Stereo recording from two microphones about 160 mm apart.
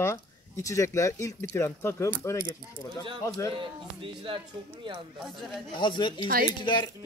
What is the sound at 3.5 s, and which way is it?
Speech, 35° right (ahead or behind).